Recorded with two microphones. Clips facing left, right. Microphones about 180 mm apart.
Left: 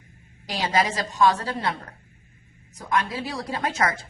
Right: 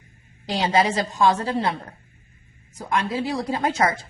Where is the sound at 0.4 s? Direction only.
30° right (ahead or behind).